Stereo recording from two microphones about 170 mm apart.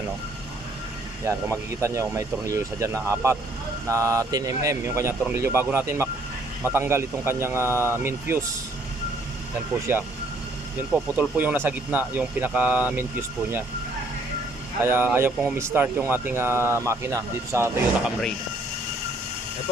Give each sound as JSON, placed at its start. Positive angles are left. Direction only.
{"t": 1.2, "sound": "speech", "side_deg": -15}
{"t": 9.9, "sound": "speech", "side_deg": -15}
{"t": 14.8, "sound": "speech", "side_deg": -10}